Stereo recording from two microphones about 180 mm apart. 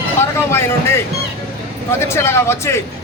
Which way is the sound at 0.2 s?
15° left (ahead or behind).